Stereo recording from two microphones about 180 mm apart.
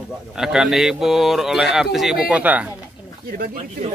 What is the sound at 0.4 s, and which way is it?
A man's voice, centre (ahead or behind).